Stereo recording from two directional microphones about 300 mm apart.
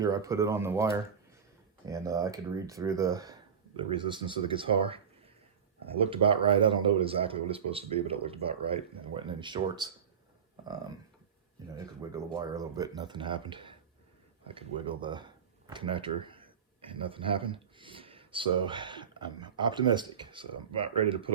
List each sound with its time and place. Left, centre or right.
0.0 s speech: centre
1.9 s speech: centre
6.0 s speech: centre
11.6 s speech: centre